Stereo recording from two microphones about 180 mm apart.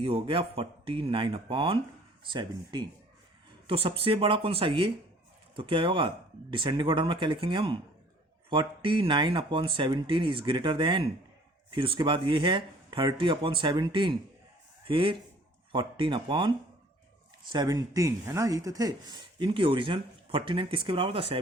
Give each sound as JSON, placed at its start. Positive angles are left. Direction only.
{"t": 0.0, "sound": "speech", "side_deg": -30}